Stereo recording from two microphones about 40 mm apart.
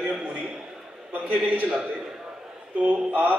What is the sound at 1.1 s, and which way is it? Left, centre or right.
Speech, right.